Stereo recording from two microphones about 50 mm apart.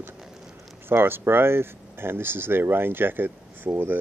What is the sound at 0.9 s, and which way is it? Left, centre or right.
Speech, right.